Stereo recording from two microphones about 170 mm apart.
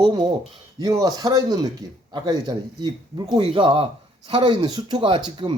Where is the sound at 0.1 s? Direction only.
25° right (ahead or behind).